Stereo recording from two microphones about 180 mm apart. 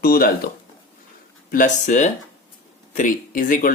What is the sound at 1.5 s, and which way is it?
Speech, 45° left (ahead or behind).